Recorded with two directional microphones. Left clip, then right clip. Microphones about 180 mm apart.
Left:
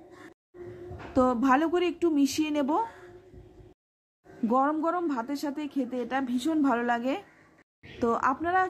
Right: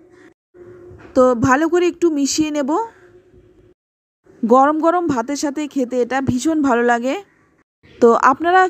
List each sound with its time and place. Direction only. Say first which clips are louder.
1.1 s speech: right 10 dB; 30° right (ahead or behind)
4.5 s speech: right 13 dB; 40° right (ahead or behind)